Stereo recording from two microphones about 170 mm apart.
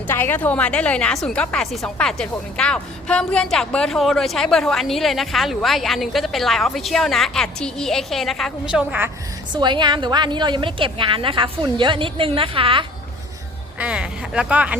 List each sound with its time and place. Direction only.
0.1 s a woman's voice: 10° left (ahead or behind); by 9.0 s 10° right (ahead or behind)
9.5 s a woman's voice: 25° right (ahead or behind)
13.7 s speech: 5° right (ahead or behind)